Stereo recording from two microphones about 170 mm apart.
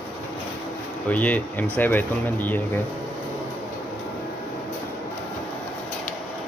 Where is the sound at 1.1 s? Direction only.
10° left (ahead or behind).